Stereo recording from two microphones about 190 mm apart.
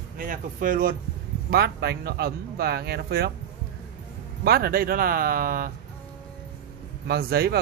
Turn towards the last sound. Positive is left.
turn(degrees=-55)  # may be behind; listen again after turning